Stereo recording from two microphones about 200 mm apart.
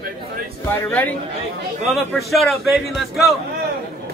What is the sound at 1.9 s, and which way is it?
Speech, centre (ahead or behind).